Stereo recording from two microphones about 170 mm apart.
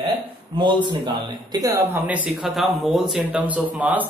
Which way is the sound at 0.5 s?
30° right (ahead or behind).